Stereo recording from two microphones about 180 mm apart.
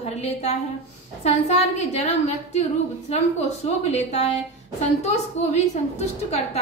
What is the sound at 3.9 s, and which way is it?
Speech, 35° left (ahead or behind).